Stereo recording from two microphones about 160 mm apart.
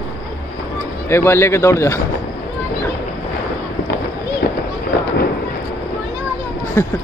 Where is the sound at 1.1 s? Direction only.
15° left (ahead or behind).